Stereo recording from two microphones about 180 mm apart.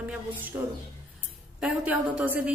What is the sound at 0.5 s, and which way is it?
Speech, 15° right (ahead or behind).